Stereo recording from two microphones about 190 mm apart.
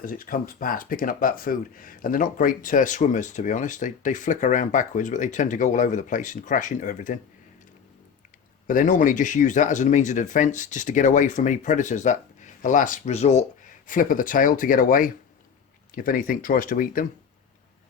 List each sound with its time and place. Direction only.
0.0 s speech: 50° left (ahead or behind)
8.6 s speech: 45° left (ahead or behind)